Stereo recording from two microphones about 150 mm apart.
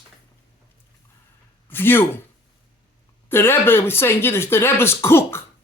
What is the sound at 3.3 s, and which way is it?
Speech, 15° left (ahead or behind).